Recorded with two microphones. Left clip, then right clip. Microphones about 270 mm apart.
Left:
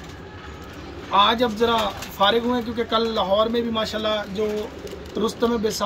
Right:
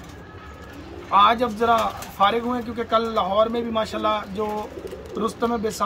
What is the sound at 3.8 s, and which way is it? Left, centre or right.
Speech, right.